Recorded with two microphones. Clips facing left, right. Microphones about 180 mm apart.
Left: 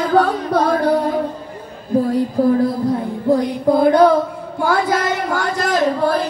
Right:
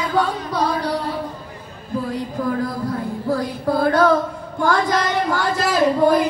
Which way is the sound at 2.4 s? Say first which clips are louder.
Left 8 dB; 30° left (ahead or behind).